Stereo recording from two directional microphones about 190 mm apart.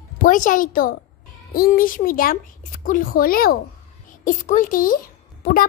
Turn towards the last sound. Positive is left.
turn(degrees=50)  # may be behind; listen again after turning